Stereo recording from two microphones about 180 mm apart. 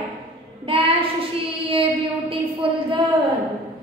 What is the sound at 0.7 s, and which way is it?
Child singing, 30° right (ahead or behind).